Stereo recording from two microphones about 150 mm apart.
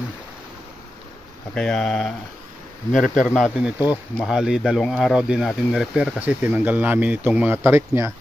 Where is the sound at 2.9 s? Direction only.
55° left (ahead or behind).